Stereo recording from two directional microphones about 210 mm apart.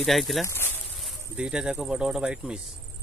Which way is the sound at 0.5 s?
10° left (ahead or behind).